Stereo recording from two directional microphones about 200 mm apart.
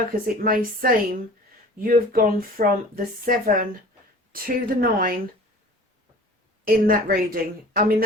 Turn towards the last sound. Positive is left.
turn(degrees=-45)  # may be behind; listen again after turning